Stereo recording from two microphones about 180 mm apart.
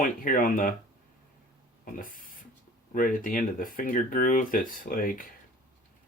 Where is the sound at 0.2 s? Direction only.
50° left (ahead or behind).